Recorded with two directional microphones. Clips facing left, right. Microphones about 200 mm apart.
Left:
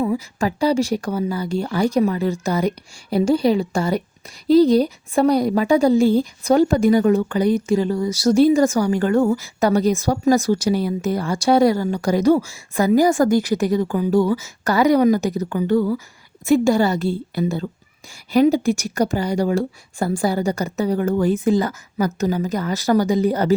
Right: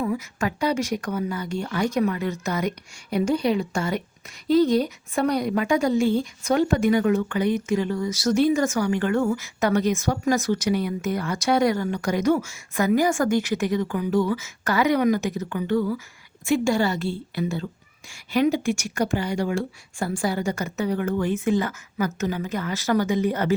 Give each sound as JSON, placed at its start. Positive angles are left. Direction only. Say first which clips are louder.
{"t": 0.0, "sound": "a woman's voice", "louder": "left 5 dB", "side_deg": 30}